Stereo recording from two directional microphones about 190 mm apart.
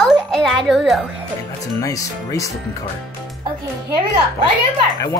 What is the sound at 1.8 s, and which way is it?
Speech, 15° left (ahead or behind).